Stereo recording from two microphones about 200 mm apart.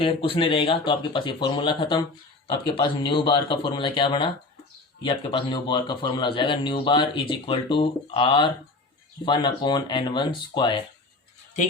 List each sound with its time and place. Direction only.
0.0 s speech: 25° left (ahead or behind)